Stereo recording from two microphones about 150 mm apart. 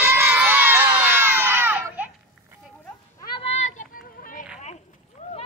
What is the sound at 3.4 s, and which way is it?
Children playing, 45° left (ahead or behind).